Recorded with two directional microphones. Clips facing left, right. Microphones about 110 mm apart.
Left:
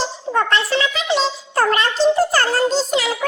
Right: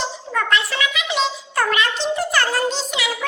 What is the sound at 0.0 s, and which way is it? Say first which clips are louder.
A child's voice: left 4 dB; 35° left (ahead or behind).